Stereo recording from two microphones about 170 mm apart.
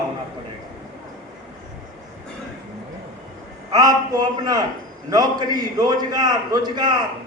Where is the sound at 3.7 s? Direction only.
25° right (ahead or behind).